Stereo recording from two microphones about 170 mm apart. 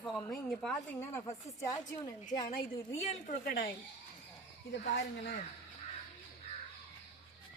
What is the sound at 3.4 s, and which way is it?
Speech, 60° left (ahead or behind).